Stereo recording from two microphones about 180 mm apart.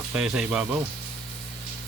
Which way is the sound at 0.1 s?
5° right (ahead or behind).